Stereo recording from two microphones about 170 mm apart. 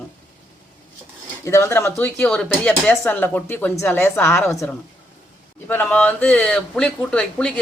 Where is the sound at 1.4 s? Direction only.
15° left (ahead or behind).